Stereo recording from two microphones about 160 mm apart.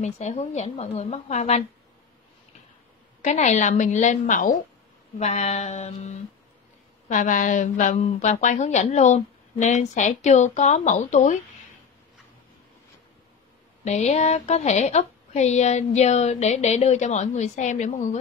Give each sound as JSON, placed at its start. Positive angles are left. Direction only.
{"t": 0.0, "sound": "speech", "side_deg": 50}
{"t": 3.2, "sound": "speech", "side_deg": 45}
{"t": 13.8, "sound": "speech", "side_deg": 45}